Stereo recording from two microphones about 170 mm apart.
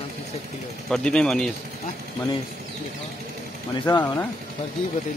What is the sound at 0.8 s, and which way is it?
Speech, 5° left (ahead or behind).